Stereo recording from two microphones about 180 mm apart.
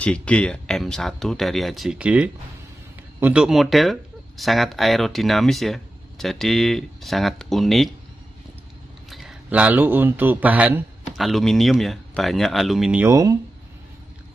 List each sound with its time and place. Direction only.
0.0 s speech: 5° left (ahead or behind)
9.1 s a man's voice: centre (ahead or behind)
13.0 s speech: 20° right (ahead or behind)